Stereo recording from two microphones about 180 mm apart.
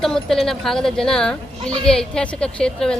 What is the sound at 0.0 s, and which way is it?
A child's voice, centre (ahead or behind).